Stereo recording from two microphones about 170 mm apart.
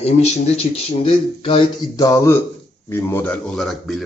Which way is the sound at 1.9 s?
20° left (ahead or behind).